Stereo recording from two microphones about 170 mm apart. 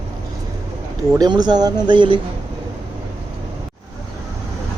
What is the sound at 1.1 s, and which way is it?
Speech, 25° right (ahead or behind).